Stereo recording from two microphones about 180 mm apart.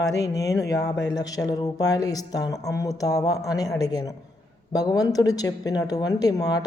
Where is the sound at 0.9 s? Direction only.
20° left (ahead or behind).